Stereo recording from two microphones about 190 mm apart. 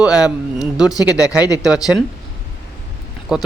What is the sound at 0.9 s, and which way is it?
Speech, 20° left (ahead or behind).